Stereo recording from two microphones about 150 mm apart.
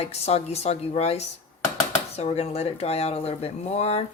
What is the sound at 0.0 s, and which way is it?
Speech, 45° left (ahead or behind).